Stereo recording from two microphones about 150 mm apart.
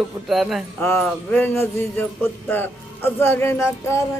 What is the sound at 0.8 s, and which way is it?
A man's voice, 10° left (ahead or behind).